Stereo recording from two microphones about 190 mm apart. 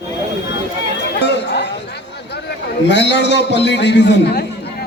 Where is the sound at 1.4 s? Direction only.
65° left (ahead or behind).